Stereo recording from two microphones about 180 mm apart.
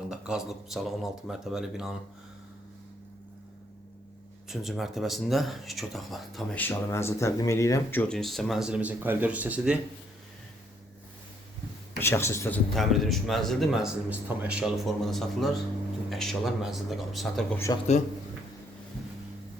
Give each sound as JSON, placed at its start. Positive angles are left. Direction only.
{"t": 0.1, "sound": "speech", "side_deg": -5}
{"t": 4.4, "sound": "speech", "side_deg": 0}
{"t": 11.9, "sound": "speech", "side_deg": 15}